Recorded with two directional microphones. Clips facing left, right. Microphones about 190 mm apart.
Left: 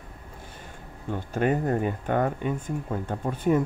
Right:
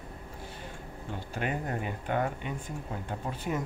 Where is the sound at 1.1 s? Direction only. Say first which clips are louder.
Left 9 dB; 45° left (ahead or behind).